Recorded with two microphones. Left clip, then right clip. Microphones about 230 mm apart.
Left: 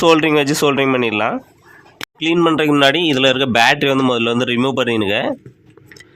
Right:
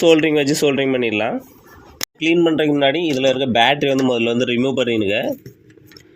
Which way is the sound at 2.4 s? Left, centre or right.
Centre.